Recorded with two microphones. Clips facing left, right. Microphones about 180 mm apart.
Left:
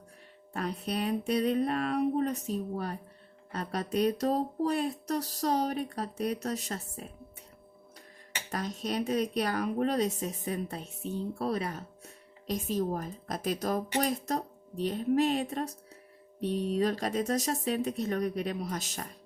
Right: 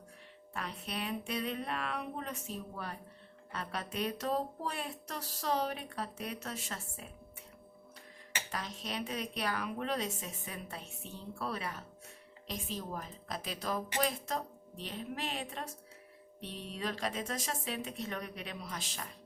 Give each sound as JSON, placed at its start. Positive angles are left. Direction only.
{"t": 0.5, "sound": "speech", "side_deg": 40}
{"t": 8.4, "sound": "speech", "side_deg": 45}